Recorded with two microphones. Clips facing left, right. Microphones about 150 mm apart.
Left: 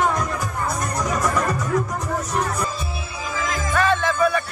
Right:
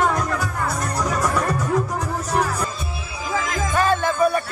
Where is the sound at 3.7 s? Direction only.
40° right (ahead or behind).